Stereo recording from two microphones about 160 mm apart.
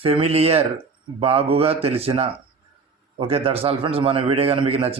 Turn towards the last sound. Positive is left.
turn(degrees=-35)  # may be behind; listen again after turning